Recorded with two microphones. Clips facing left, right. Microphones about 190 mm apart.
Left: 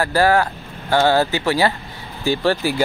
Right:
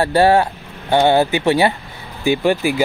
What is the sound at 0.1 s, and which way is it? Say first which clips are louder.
Speech: right 3 dB; 25° right (ahead or behind).